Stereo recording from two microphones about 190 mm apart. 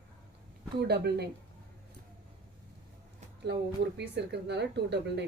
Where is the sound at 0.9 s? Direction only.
60° right (ahead or behind).